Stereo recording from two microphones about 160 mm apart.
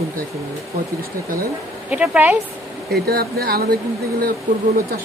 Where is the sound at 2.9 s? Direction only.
75° right (ahead or behind).